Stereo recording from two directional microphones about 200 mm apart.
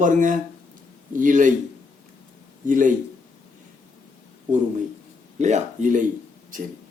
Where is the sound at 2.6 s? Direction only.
40° right (ahead or behind).